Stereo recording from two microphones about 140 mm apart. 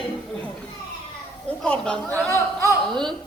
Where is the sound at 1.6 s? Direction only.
5° left (ahead or behind).